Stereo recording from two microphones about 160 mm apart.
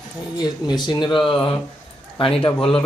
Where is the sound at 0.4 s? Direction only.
25° left (ahead or behind).